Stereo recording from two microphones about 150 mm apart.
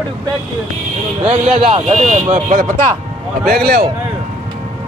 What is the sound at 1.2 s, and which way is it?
Speech, 45° right (ahead or behind).